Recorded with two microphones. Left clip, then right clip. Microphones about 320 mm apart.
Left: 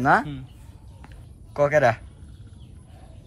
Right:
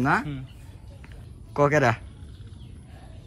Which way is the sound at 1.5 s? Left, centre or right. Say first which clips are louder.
Left 2 dB; centre.